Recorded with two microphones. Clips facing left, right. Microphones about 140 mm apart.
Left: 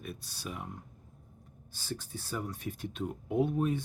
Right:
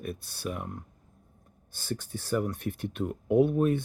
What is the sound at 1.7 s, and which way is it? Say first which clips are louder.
Speech: right 5 dB; 60° right (ahead or behind).